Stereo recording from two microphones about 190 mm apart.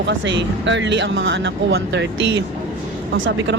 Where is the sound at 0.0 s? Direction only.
70° right (ahead or behind).